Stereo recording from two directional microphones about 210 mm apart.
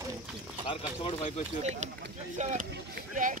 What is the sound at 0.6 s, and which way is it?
Speech, 25° left (ahead or behind).